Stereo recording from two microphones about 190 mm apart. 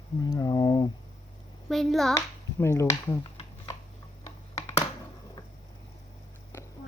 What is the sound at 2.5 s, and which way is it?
Speech, 15° left (ahead or behind).